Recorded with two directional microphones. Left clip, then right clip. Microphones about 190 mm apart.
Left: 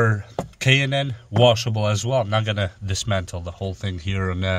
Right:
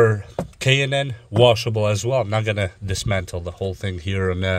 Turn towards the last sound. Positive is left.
turn(degrees=-20)  # may be behind; listen again after turning